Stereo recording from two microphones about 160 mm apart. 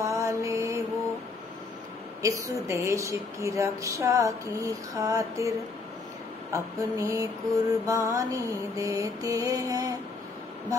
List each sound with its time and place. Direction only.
0.0 s mantra: 20° right (ahead or behind)
2.2 s speech: 20° right (ahead or behind)
6.5 s speech: 20° right (ahead or behind)